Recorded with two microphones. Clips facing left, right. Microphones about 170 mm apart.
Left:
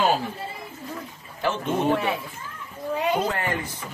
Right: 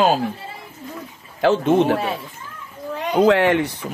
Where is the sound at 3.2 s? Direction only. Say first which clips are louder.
Right 12 dB; 80° right.